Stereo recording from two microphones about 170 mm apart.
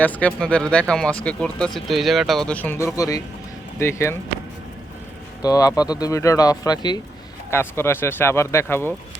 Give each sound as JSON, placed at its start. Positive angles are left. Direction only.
{"t": 0.0, "sound": "speech", "side_deg": 10}
{"t": 5.4, "sound": "speech", "side_deg": 20}